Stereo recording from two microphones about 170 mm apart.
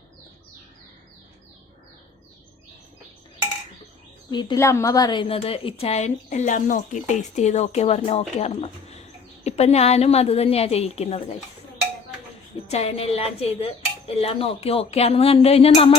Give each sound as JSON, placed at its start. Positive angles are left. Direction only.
{"t": 4.3, "sound": "a woman's voice", "side_deg": 25}
{"t": 12.7, "sound": "a woman's voice", "side_deg": 35}